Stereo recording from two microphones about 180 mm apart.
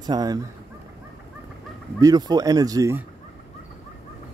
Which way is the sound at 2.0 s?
20° right (ahead or behind).